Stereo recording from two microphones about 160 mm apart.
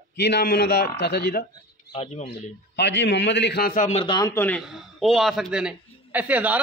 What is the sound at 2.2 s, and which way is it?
A man's voice, 90° left.